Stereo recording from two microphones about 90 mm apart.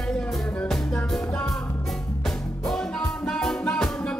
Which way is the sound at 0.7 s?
5° left (ahead or behind).